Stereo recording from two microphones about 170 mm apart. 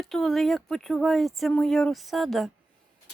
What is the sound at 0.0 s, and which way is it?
Speech, centre (ahead or behind).